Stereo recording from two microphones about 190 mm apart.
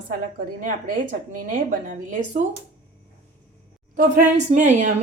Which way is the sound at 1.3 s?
45° right (ahead or behind).